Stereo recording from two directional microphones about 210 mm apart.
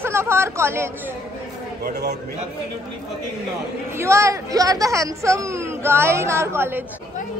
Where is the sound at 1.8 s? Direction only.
50° right (ahead or behind).